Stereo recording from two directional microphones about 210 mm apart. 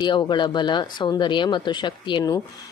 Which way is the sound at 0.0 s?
20° left (ahead or behind).